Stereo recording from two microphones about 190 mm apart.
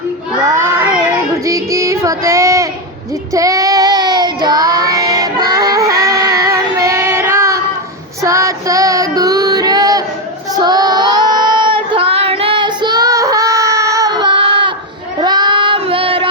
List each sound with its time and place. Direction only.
0.4 s child singing: 15° right (ahead or behind)
8.2 s female singing: 15° right (ahead or behind)
10.5 s child singing: 20° right (ahead or behind)